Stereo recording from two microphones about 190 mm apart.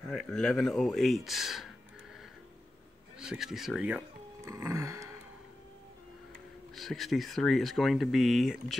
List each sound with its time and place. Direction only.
0.1 s speech: centre (ahead or behind)
3.2 s speech: centre (ahead or behind)
4.5 s a sound: 15° right (ahead or behind)
6.7 s speech: centre (ahead or behind)